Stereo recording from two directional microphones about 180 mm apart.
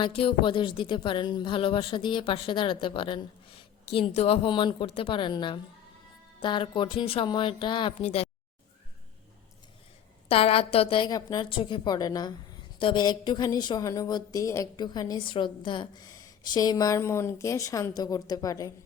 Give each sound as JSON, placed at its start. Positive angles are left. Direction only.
{"t": 0.0, "sound": "a woman's voice", "side_deg": 30}
{"t": 10.2, "sound": "a woman's voice", "side_deg": 30}